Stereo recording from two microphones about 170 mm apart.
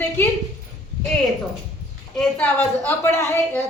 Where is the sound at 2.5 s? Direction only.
15° left (ahead or behind).